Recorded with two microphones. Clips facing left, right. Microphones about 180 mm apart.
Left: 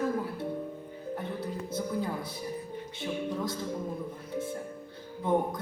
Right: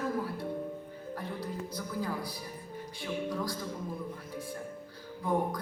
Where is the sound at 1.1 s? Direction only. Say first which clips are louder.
Left 3 dB; 25° left (ahead or behind).